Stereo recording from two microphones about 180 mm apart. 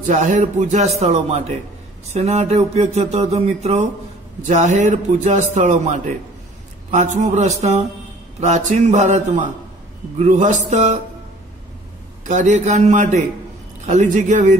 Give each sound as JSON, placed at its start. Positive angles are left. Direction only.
{"t": 0.0, "sound": "speech", "side_deg": -40}
{"t": 12.3, "sound": "speech", "side_deg": -40}